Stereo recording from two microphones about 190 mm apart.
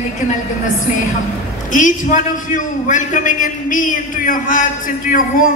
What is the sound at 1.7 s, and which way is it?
A man's voice, 40° left (ahead or behind).